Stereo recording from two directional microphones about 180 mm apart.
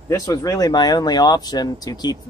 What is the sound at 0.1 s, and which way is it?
Speech, 20° left (ahead or behind).